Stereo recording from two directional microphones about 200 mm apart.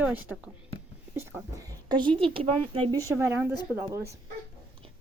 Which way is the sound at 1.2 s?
15° right (ahead or behind).